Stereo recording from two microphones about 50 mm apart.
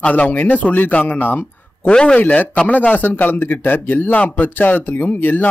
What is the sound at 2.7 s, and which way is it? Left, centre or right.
Speech, left.